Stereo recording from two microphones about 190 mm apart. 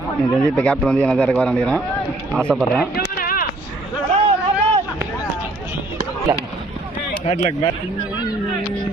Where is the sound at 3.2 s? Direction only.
50° left (ahead or behind).